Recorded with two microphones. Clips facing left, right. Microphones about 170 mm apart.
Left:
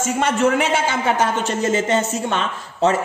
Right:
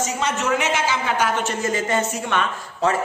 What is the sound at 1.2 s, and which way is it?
A woman's voice, 25° left (ahead or behind).